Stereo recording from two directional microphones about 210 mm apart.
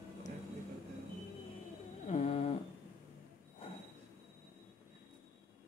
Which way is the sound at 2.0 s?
30° left (ahead or behind).